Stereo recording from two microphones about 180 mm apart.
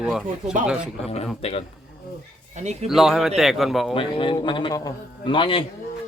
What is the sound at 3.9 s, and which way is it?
A man's voice, 30° left (ahead or behind).